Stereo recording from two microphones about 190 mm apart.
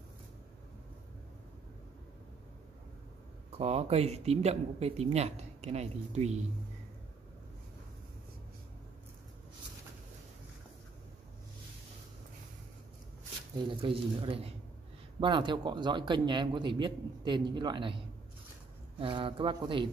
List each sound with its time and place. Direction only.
3.5 s speech: 30° right (ahead or behind)
13.6 s a man's voice: 25° right (ahead or behind)